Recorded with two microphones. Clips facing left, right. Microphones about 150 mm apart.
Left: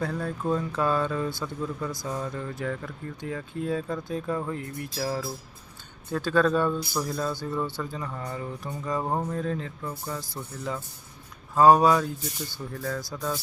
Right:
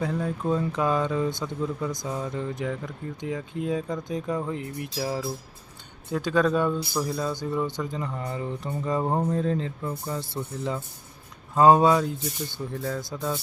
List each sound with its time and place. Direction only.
0.0 s speech: 15° right (ahead or behind)
11.5 s speech: 20° right (ahead or behind)